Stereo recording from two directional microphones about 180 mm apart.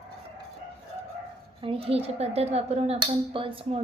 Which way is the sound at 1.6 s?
30° right (ahead or behind).